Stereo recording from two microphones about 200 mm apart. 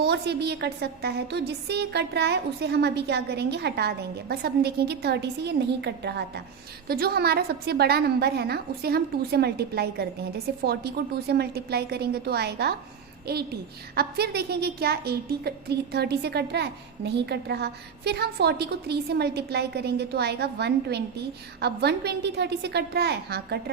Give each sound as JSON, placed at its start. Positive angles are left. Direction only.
{"t": 0.0, "sound": "a woman's voice", "side_deg": -55}